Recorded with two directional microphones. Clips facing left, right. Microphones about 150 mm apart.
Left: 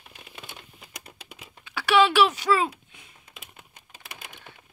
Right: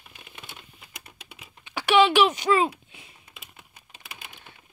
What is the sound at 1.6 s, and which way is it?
Speech, 15° right (ahead or behind).